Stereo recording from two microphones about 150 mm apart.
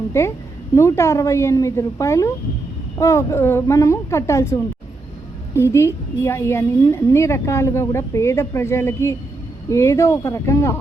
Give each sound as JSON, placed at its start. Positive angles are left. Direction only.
{"t": 0.1, "sound": "a woman's voice", "side_deg": 20}